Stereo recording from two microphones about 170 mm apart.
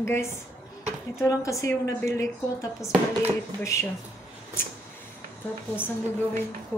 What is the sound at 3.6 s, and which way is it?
Speech, 15° left (ahead or behind).